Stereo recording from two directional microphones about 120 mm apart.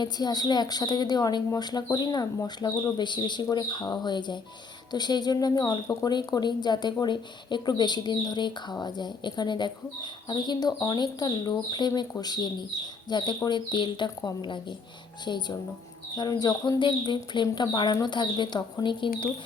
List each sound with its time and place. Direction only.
0.0 s speech: 35° left (ahead or behind)